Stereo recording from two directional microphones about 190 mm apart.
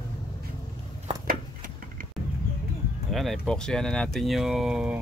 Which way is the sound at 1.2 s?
45° right (ahead or behind).